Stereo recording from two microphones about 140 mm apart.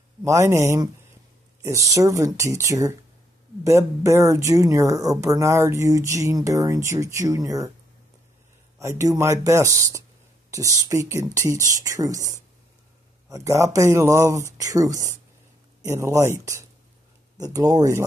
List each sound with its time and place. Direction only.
0.2 s speech: 20° right (ahead or behind)
8.7 s speech: 25° right (ahead or behind)